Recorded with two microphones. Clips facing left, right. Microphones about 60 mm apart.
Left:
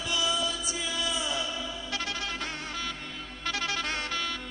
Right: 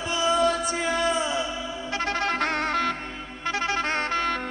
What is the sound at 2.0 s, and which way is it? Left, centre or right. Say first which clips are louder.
Music: right 11 dB; right.